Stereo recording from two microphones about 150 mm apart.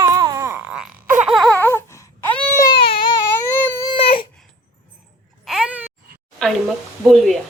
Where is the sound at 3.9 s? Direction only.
40° left (ahead or behind).